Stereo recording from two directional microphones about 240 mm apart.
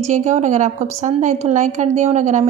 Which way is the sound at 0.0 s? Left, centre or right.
Right.